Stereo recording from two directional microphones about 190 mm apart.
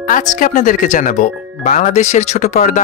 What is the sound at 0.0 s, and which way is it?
Speech, 45° left (ahead or behind).